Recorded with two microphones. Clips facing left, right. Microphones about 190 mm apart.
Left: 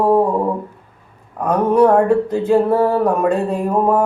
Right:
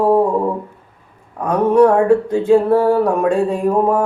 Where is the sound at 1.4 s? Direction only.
5° left (ahead or behind).